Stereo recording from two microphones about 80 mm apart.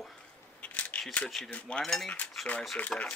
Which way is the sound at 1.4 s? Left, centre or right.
Centre.